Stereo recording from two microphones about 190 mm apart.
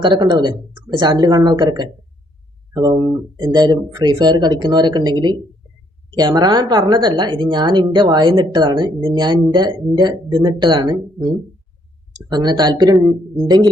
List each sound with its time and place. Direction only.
0.0 s a woman's voice: 25° right (ahead or behind)